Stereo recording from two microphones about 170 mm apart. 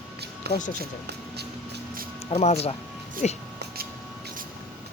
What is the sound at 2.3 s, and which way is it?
Speech, 40° left (ahead or behind).